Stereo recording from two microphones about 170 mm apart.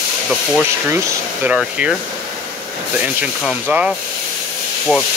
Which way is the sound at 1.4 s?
5° right (ahead or behind).